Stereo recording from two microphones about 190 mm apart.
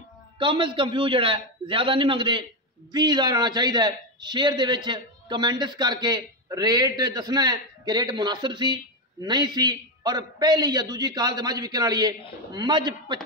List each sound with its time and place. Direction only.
0.4 s a man's voice: 25° right (ahead or behind)